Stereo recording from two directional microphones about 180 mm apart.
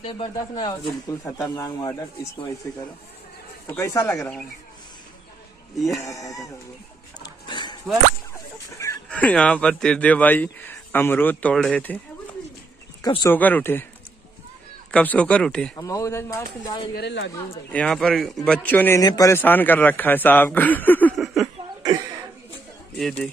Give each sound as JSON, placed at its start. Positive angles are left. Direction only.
{"t": 0.4, "sound": "speech", "side_deg": 20}
{"t": 3.6, "sound": "a man's voice", "side_deg": 15}
{"t": 5.8, "sound": "speech", "side_deg": 0}
{"t": 6.0, "sound": "speech", "side_deg": 20}
{"t": 7.4, "sound": "drip", "side_deg": 25}
{"t": 8.7, "sound": "a man's voice", "side_deg": 15}
{"t": 13.0, "sound": "speech", "side_deg": 20}
{"t": 13.3, "sound": "a man's voice", "side_deg": 10}
{"t": 14.9, "sound": "a man's voice", "side_deg": 5}
{"t": 15.8, "sound": "a man's voice", "side_deg": 15}
{"t": 16.9, "sound": "speech", "side_deg": 75}
{"t": 17.6, "sound": "a man's voice", "side_deg": 5}
{"t": 21.2, "sound": "a sound", "side_deg": 0}
{"t": 22.9, "sound": "speech", "side_deg": 0}